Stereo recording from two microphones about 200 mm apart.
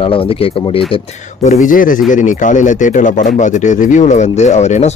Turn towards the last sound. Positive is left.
turn(degrees=35)  # may be behind; listen again after turning